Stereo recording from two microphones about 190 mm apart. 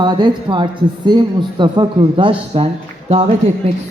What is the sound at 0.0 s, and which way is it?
A woman's voice, 20° right (ahead or behind).